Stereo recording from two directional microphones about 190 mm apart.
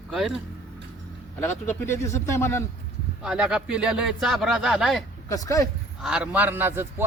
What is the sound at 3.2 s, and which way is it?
Speech, 5° right (ahead or behind).